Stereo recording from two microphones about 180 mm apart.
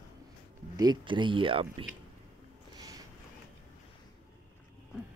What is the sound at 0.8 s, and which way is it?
Speech, 25° right (ahead or behind).